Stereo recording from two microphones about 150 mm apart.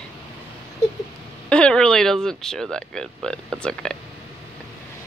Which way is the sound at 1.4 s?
5° left (ahead or behind).